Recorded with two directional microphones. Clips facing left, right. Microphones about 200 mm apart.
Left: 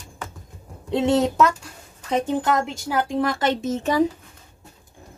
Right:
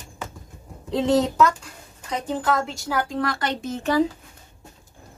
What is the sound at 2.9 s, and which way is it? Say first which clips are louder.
A woman's voice: left 3 dB; 20° left (ahead or behind).